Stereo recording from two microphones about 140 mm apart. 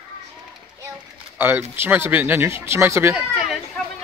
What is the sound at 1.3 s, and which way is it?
Speech, 15° right (ahead or behind).